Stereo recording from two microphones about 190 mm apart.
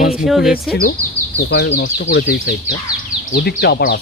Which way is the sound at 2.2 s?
50° left (ahead or behind).